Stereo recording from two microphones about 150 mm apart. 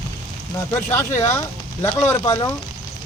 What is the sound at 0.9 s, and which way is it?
Speech, 15° left (ahead or behind).